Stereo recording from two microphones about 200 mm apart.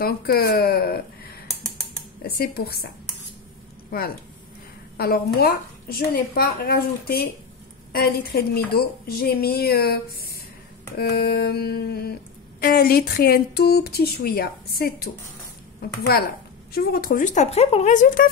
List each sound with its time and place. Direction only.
0.0 s a woman's voice: 50° left (ahead or behind)
3.9 s a woman's voice: 45° left (ahead or behind)